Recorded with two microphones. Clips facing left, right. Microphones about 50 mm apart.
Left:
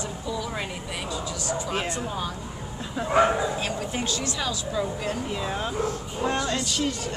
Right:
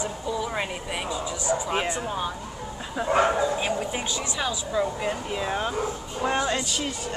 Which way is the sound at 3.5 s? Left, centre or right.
Centre.